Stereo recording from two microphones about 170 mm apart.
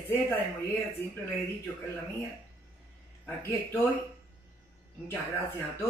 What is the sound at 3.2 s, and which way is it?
Speech, 10° left (ahead or behind).